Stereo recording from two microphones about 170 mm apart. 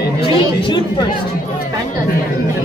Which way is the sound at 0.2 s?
30° left (ahead or behind).